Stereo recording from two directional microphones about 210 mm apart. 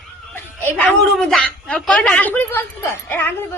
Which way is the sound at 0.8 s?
5° left (ahead or behind).